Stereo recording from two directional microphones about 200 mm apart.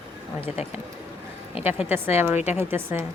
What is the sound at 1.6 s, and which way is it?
A woman's voice, 10° right (ahead or behind).